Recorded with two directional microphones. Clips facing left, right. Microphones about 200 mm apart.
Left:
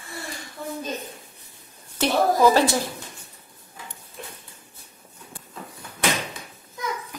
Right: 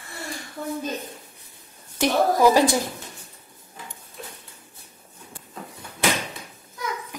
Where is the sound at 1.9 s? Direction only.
15° right (ahead or behind).